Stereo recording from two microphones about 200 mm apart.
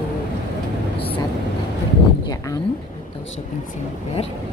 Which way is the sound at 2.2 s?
20° left (ahead or behind).